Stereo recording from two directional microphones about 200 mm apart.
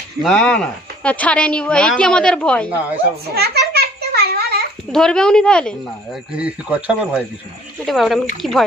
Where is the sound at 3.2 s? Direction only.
50° right (ahead or behind).